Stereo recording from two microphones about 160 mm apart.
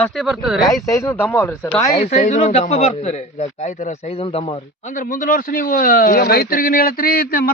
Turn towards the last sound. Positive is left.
turn(degrees=65)  # may be behind; listen again after turning